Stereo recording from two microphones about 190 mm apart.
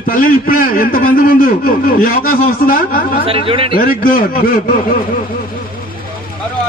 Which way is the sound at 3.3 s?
30° right (ahead or behind).